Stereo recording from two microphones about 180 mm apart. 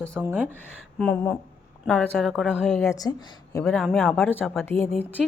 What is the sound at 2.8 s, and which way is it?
Speech, 15° left (ahead or behind).